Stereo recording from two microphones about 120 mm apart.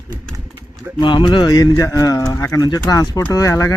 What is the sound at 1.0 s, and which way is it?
Speech, 40° left (ahead or behind).